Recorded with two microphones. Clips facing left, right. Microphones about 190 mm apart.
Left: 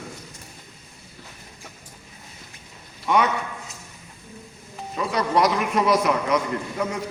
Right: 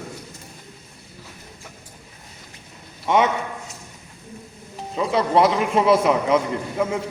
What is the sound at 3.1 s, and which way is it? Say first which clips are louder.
Speech: right 2 dB; 25° right (ahead or behind).